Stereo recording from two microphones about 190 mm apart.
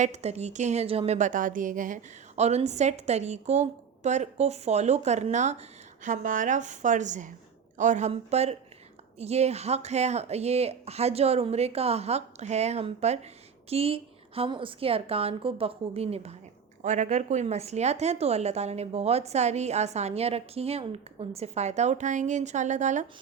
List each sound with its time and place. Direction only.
0.0 s a woman's voice: 35° right (ahead or behind)